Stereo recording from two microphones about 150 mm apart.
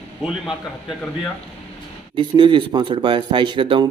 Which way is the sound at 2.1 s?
30° right (ahead or behind).